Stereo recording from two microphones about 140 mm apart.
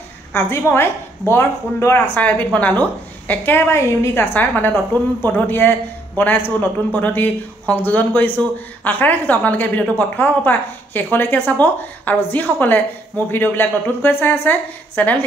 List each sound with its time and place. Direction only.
0.3 s a woman's voice: 15° left (ahead or behind)